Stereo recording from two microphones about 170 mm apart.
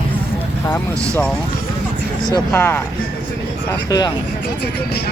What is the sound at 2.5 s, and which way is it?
Speech, 15° left (ahead or behind).